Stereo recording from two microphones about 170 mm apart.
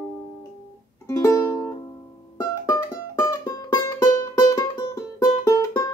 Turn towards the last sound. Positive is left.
turn(degrees=20)  # may be behind; listen again after turning